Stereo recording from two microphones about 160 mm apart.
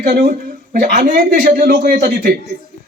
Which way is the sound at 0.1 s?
65° right (ahead or behind).